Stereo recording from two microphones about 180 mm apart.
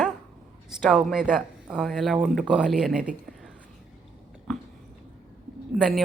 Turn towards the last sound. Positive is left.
turn(degrees=0)  # may be behind; listen again after turning